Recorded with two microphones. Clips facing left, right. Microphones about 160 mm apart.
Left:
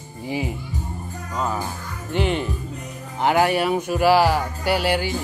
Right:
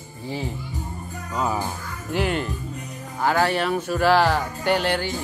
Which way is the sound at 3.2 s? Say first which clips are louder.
Left 2 dB; 20° left (ahead or behind).